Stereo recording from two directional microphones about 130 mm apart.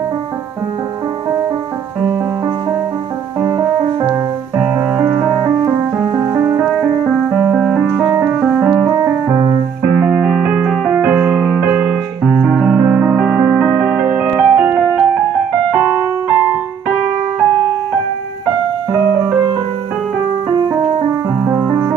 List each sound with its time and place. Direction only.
3.4 s music: 25° right (ahead or behind)
6.6 s music: 5° right (ahead or behind)
8.9 s music: 25° right (ahead or behind)
15.8 s music: 25° right (ahead or behind)
21.5 s music: 15° right (ahead or behind)